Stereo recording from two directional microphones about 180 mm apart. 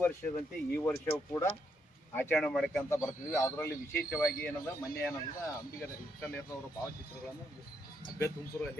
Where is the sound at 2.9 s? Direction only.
15° left (ahead or behind).